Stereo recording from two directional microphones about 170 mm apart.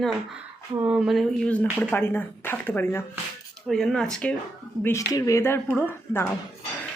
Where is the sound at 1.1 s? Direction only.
5° left (ahead or behind).